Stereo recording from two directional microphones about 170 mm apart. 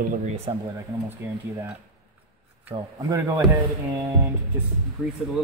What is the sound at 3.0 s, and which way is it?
Speech, 20° right (ahead or behind).